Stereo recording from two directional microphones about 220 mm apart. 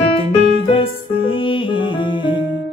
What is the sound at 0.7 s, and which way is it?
Music, 25° left (ahead or behind).